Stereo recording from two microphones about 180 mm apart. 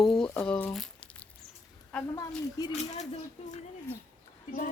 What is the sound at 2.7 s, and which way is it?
Speech, 40° left (ahead or behind).